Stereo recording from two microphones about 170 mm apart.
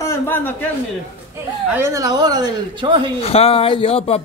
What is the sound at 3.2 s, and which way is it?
Speech, 35° left (ahead or behind).